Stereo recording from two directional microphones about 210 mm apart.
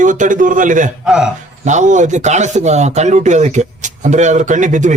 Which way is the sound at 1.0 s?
5° right (ahead or behind).